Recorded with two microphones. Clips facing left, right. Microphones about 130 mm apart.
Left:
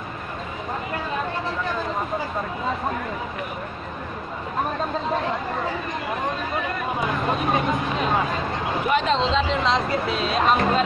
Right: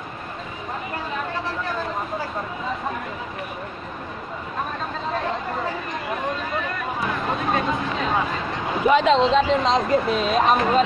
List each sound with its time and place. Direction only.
7.5 s speech: 15° left (ahead or behind)
8.8 s speech: 90° right
9.3 s speech: 50° right (ahead or behind)